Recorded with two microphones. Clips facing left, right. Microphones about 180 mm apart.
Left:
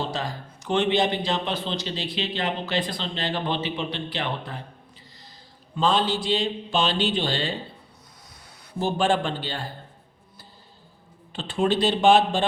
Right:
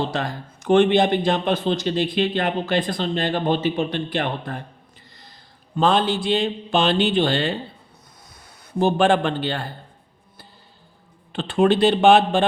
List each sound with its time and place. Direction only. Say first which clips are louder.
0.1 s a man's voice: right 4 dB; 55° right (ahead or behind)
5.7 s speech: right 4 dB; 55° right (ahead or behind)
8.8 s speech: right 5 dB; 60° right (ahead or behind)
11.3 s speech: right 6 dB; 60° right (ahead or behind)